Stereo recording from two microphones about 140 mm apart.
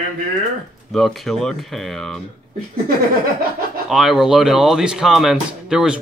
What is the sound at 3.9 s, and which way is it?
Speech, centre (ahead or behind).